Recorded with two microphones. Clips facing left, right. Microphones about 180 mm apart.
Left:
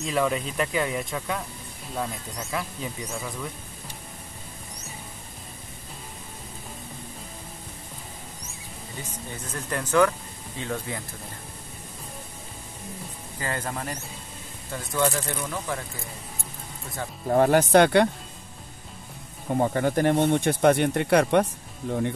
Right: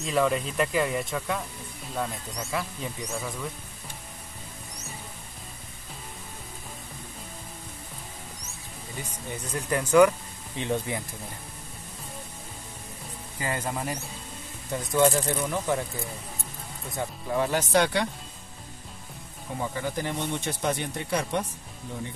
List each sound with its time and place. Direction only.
0.0 s speech: centre (ahead or behind)
9.5 s speech: 10° right (ahead or behind)
13.4 s speech: 10° right (ahead or behind)
17.3 s speech: 55° left (ahead or behind)
19.6 s speech: 55° left (ahead or behind)